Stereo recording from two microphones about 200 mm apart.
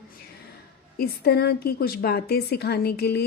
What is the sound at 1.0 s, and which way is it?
A woman's voice, 55° left (ahead or behind).